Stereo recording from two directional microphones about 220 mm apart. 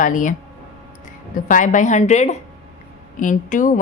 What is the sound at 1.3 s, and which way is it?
Speech, 35° left (ahead or behind).